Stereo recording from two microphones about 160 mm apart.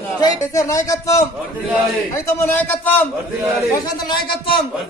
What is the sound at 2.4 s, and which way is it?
Speech, 10° left (ahead or behind).